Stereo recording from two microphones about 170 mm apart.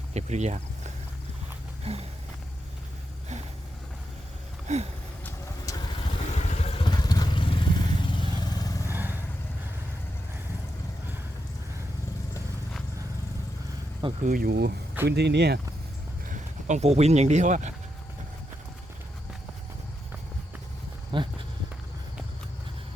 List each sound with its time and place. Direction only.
0.1 s speech: 40° right (ahead or behind)
1.8 s a sound: 35° right (ahead or behind)
4.7 s a sound: 45° right (ahead or behind)
6.1 s vehicle: 40° left (ahead or behind); by 8.9 s 20° left (ahead or behind)
8.9 s vehicle: 10° right (ahead or behind)
14.3 s speech: 60° right (ahead or behind)
15.0 s speech: 80° right
16.3 s speech: 45° right (ahead or behind)
21.1 s a sound: 30° right (ahead or behind)